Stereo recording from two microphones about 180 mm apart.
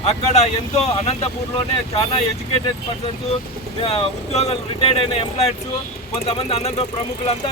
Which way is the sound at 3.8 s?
35° left (ahead or behind).